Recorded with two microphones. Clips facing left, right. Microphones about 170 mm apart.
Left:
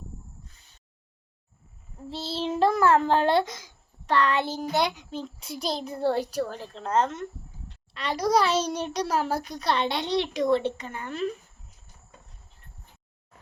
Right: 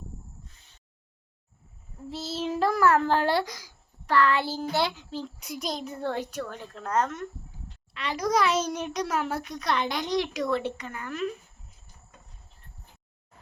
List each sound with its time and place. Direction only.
2.0 s a child's voice: 30° left (ahead or behind)